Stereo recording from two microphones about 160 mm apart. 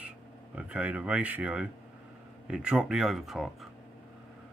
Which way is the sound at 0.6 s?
10° right (ahead or behind).